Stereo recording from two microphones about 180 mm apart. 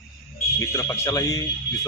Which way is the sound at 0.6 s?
15° left (ahead or behind).